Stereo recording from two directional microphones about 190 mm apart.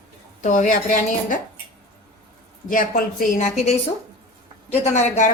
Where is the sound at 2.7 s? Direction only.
45° left (ahead or behind).